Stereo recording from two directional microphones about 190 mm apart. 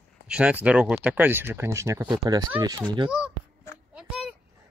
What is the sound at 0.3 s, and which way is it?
Speech, 5° right (ahead or behind).